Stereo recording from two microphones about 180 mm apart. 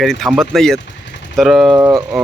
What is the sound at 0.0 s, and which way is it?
Speech, centre (ahead or behind).